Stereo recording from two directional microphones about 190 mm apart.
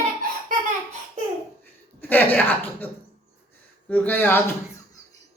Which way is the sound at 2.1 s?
10° left (ahead or behind).